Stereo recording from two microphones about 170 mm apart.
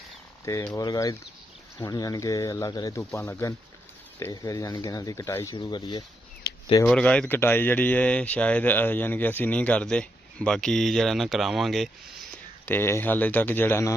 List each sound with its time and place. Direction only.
0.7 s speech: 20° left (ahead or behind)
6.4 s a sound: 75° left (ahead or behind)
6.9 s speech: 5° left (ahead or behind)
12.6 s speech: 15° left (ahead or behind)